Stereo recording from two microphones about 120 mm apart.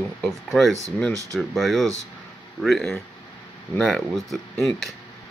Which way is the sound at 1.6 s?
Centre (ahead or behind).